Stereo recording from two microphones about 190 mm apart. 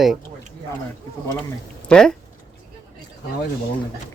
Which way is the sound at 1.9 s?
5° left (ahead or behind).